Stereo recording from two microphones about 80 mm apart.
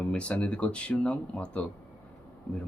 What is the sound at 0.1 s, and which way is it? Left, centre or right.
Speech, centre.